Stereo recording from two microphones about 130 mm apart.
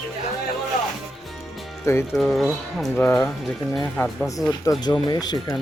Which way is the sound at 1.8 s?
20° left (ahead or behind).